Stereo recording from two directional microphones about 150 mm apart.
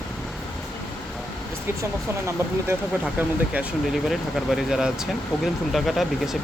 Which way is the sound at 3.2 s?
10° right (ahead or behind).